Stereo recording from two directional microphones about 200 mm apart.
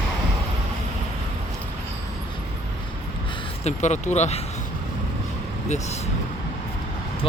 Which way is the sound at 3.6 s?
35° left (ahead or behind).